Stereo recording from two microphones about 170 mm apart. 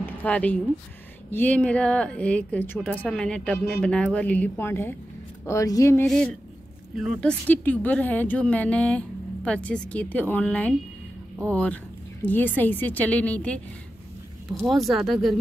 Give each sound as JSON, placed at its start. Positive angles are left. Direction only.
{"t": 0.0, "sound": "speech", "side_deg": 10}
{"t": 6.0, "sound": "speech", "side_deg": 5}
{"t": 14.9, "sound": "speech", "side_deg": 0}